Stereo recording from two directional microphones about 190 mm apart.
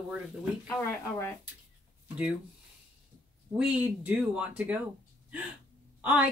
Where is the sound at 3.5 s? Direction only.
10° right (ahead or behind).